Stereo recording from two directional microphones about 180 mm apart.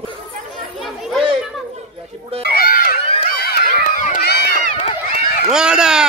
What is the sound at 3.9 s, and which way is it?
Run, 45° left (ahead or behind).